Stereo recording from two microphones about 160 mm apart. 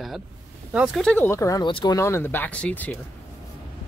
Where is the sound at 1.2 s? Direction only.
20° left (ahead or behind).